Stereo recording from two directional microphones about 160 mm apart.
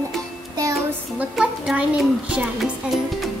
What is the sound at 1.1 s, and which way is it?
A child's voice, 5° right (ahead or behind).